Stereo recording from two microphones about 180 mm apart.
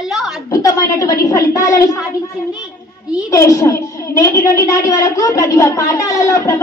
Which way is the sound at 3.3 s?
20° left (ahead or behind).